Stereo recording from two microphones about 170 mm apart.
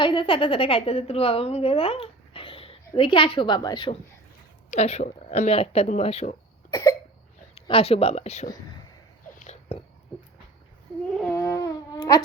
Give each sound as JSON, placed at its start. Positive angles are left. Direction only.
{"t": 0.0, "sound": "speech", "side_deg": 30}
{"t": 4.7, "sound": "speech", "side_deg": 40}
{"t": 6.7, "sound": "cough", "side_deg": 20}
{"t": 7.5, "sound": "speech", "side_deg": 35}
{"t": 9.3, "sound": "a sound", "side_deg": 45}
{"t": 11.4, "sound": "a sound", "side_deg": 20}